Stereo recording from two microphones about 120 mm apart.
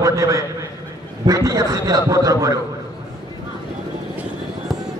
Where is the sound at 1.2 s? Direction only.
30° right (ahead or behind).